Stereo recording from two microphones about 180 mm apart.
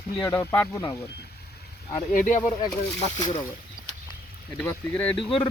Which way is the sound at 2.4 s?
15° left (ahead or behind).